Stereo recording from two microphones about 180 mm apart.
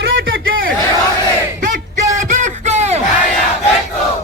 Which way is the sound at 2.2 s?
40° right (ahead or behind).